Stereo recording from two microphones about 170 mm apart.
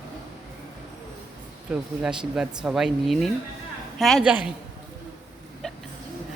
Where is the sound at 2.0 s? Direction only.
5° right (ahead or behind).